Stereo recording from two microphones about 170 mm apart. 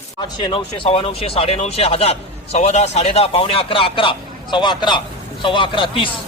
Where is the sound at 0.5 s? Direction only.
35° left (ahead or behind).